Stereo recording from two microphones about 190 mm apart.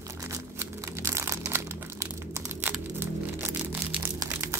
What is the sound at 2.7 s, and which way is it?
Music, 10° right (ahead or behind).